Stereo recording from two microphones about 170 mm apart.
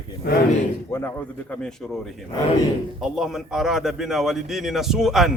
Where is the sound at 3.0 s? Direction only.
Centre (ahead or behind).